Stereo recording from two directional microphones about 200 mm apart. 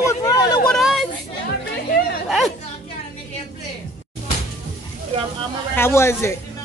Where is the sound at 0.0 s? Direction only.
20° left (ahead or behind).